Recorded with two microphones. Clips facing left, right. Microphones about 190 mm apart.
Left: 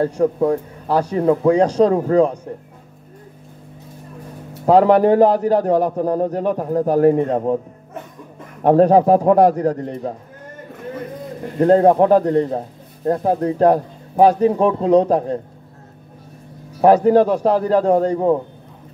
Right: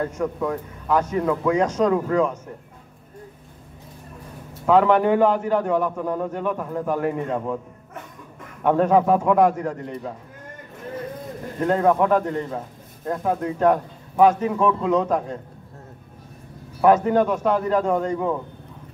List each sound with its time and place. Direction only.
0.0 s speech: 35° left (ahead or behind)
4.6 s speech: 35° left (ahead or behind)
8.6 s speech: 35° left (ahead or behind)
11.6 s speech: 35° left (ahead or behind)
16.8 s speech: 35° left (ahead or behind)